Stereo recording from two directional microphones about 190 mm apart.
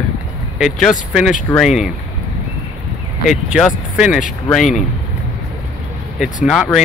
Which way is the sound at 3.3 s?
5° right (ahead or behind).